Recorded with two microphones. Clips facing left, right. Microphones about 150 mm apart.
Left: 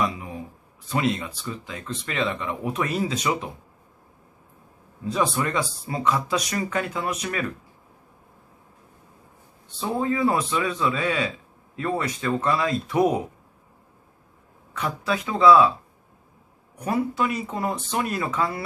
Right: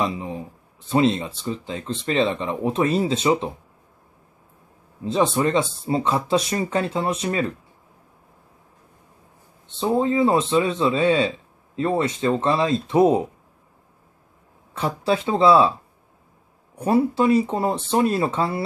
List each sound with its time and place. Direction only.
0.0 s a man's voice: 25° right (ahead or behind)
5.0 s a man's voice: 25° right (ahead or behind)
9.7 s a man's voice: 25° right (ahead or behind)
14.7 s a man's voice: 30° right (ahead or behind)
16.7 s a man's voice: 30° right (ahead or behind)